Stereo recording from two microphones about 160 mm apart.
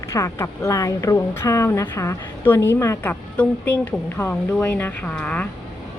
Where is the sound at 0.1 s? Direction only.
15° left (ahead or behind).